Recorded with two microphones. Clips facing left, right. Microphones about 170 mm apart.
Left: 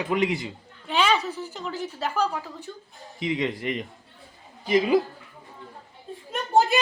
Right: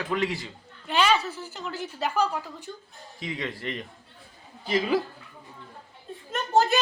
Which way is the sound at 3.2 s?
20° left (ahead or behind).